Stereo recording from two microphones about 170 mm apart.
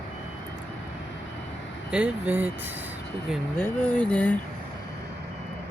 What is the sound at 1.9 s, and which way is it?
Speech, 10° right (ahead or behind).